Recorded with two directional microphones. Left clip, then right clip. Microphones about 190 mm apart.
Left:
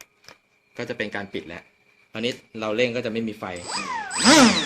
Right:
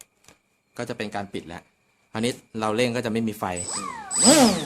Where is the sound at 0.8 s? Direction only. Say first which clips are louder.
Left 1 dB; 20° right (ahead or behind).